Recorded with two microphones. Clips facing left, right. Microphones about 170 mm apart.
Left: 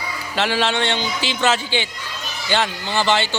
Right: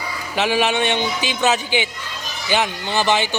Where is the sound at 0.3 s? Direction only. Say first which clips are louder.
Right 2 dB; 15° right (ahead or behind).